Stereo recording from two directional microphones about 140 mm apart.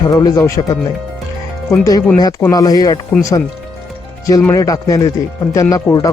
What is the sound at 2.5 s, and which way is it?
Speech, 25° left (ahead or behind).